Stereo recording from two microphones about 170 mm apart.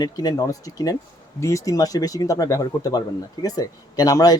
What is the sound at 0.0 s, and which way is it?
Speech, 25° left (ahead or behind).